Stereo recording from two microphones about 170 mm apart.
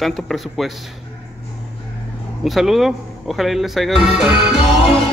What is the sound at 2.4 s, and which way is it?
Speech, centre (ahead or behind).